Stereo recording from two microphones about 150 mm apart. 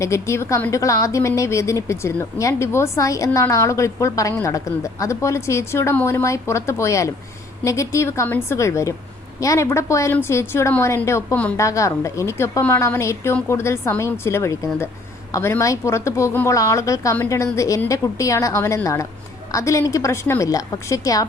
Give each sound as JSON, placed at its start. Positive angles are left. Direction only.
{"t": 0.0, "sound": "a woman's voice", "side_deg": 20}